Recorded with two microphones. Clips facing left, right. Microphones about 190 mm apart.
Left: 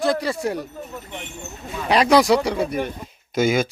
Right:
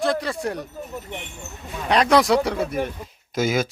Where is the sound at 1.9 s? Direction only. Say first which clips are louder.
Left 2 dB; 5° left (ahead or behind).